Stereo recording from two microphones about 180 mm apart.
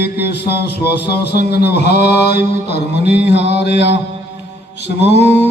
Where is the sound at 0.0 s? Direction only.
60° left (ahead or behind).